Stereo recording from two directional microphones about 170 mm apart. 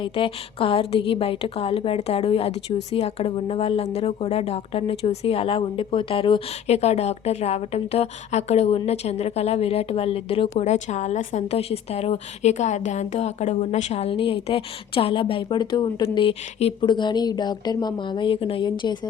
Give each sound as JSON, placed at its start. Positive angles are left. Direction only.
{"t": 0.0, "sound": "speech", "side_deg": 30}